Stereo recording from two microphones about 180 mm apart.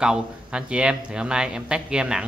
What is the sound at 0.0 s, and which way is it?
Speech, 5° right (ahead or behind).